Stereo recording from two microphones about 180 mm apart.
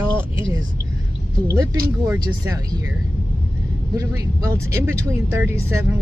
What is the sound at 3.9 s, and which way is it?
Speech, 15° right (ahead or behind).